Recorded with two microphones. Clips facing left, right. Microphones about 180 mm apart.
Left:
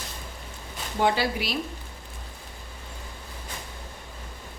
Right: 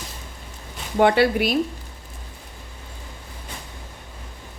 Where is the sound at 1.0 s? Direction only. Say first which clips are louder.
Right 8 dB; 60° right (ahead or behind).